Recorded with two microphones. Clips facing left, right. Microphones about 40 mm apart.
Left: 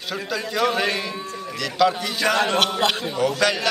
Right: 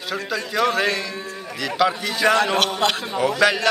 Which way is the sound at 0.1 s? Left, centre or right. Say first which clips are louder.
Right 1 dB; centre.